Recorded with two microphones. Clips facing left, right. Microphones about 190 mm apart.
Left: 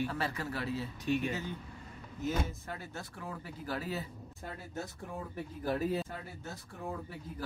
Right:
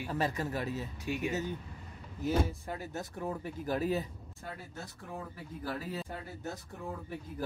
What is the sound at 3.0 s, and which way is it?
Speech, 20° right (ahead or behind).